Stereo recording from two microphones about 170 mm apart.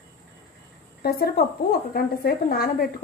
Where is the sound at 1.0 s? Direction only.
70° left (ahead or behind).